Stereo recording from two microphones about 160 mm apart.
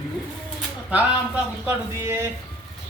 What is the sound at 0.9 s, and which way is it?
Speech, 10° right (ahead or behind).